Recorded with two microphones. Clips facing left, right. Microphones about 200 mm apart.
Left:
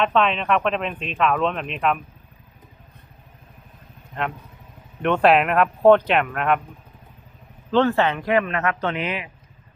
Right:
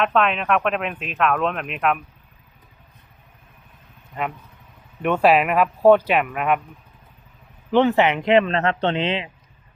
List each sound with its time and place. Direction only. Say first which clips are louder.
0.0 s speech: even; centre (ahead or behind)
4.2 s speech: even; 5° right (ahead or behind)
7.7 s speech: right 2 dB; 15° right (ahead or behind)